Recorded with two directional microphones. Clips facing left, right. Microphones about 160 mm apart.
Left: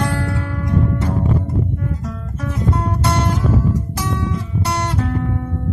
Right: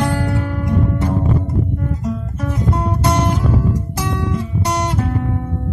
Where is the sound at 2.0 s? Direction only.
15° right (ahead or behind).